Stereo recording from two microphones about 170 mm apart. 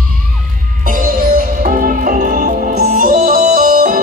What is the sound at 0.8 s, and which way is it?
Music, 50° right (ahead or behind).